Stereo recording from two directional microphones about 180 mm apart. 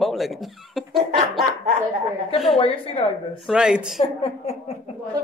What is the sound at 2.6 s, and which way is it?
Speech, 30° left (ahead or behind).